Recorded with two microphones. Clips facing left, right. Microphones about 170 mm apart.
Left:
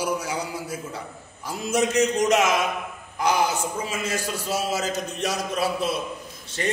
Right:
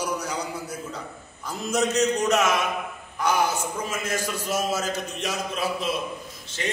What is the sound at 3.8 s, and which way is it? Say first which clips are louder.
Speech: left 1 dB; 70° left (ahead or behind).